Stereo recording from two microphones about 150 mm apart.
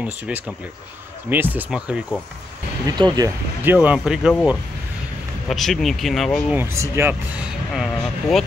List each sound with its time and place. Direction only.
0.0 s speech: 5° right (ahead or behind)
3.0 s speech: 30° right (ahead or behind)
3.6 s speech: 10° right (ahead or behind)
6.5 s speech: 15° right (ahead or behind); by 8.5 s centre (ahead or behind)